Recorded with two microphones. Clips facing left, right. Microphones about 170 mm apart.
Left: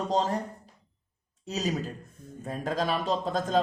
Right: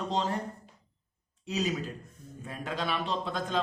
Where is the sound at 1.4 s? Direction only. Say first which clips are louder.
Left 1 dB; 40° left (ahead or behind).